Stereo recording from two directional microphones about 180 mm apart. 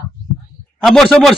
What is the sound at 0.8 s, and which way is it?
Speech, centre (ahead or behind).